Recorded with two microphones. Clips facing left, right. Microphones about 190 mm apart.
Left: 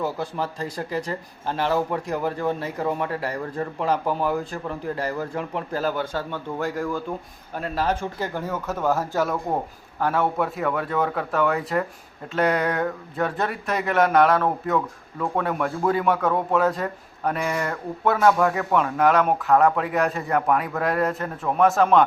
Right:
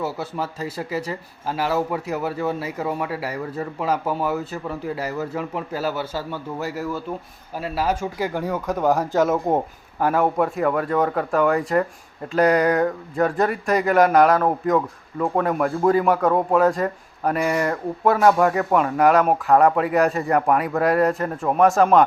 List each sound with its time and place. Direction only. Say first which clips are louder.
0.0 s speech: even; 5° right (ahead or behind); by 9.6 s 20° right (ahead or behind)
10.0 s speech: right 3 dB; 5° right (ahead or behind)